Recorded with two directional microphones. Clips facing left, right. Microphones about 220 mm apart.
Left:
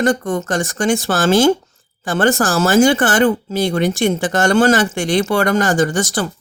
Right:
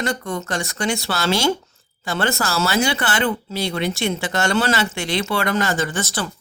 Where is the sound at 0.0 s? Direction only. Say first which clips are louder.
Left 8 dB; 45° left (ahead or behind).